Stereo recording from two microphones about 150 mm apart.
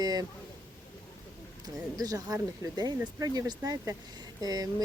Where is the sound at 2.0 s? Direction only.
25° right (ahead or behind).